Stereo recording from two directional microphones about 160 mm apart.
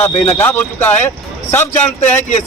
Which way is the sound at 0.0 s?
10° left (ahead or behind).